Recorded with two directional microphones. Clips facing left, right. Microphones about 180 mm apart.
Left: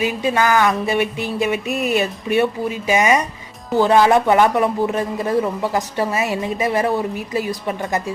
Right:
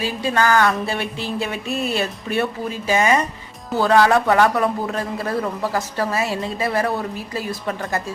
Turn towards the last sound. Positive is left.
turn(degrees=15)  # may be behind; listen again after turning